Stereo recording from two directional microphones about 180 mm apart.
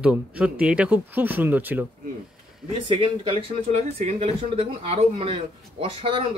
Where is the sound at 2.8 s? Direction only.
30° right (ahead or behind).